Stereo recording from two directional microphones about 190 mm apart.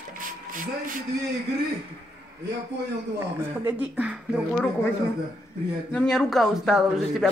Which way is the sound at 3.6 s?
10° right (ahead or behind).